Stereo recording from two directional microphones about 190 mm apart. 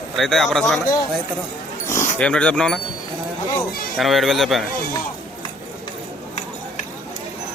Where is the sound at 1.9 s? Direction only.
40° left (ahead or behind).